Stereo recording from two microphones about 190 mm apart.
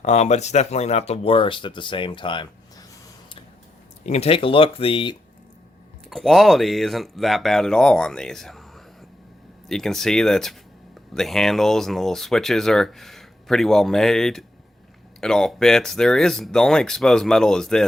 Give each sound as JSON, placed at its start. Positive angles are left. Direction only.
{"t": 0.0, "sound": "speech", "side_deg": 35}
{"t": 4.0, "sound": "speech", "side_deg": 35}
{"t": 6.1, "sound": "speech", "side_deg": 0}
{"t": 9.6, "sound": "speech", "side_deg": 0}